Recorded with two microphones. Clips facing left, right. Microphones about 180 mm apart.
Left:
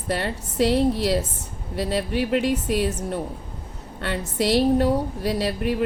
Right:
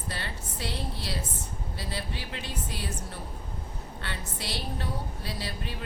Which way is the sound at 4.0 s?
65° left (ahead or behind).